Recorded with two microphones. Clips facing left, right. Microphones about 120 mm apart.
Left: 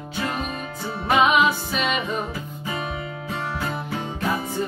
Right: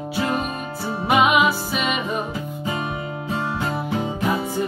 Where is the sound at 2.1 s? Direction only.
20° right (ahead or behind).